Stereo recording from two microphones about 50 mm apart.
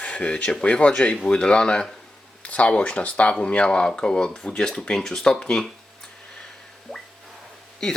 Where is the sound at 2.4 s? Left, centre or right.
Left; by 5.7 s centre.